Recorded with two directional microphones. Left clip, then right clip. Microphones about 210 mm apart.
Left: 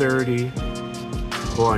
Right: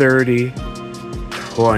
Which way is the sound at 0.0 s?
15° right (ahead or behind).